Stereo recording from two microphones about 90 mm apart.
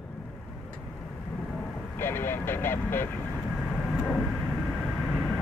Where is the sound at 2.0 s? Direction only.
25° left (ahead or behind).